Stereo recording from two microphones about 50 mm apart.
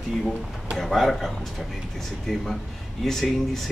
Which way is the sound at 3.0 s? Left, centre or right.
Centre.